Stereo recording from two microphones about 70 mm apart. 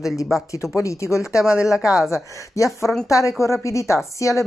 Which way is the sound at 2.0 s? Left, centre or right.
Left.